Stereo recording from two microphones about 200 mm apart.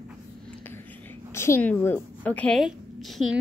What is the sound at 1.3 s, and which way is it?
A woman's voice, 15° left (ahead or behind).